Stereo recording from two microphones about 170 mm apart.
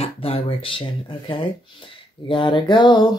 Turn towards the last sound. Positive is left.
turn(degrees=25)  # may be behind; listen again after turning